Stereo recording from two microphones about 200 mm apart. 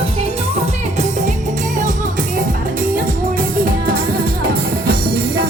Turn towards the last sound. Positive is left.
turn(degrees=-45)  # may be behind; listen again after turning